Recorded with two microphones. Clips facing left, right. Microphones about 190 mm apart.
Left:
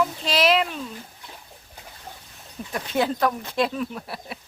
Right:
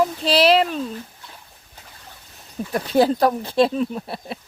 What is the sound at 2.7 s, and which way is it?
Speech, 35° right (ahead or behind).